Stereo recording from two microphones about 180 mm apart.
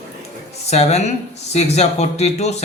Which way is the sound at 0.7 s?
35° left (ahead or behind).